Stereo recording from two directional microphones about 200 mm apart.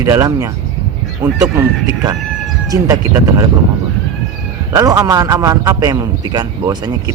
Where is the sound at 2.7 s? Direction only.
15° right (ahead or behind).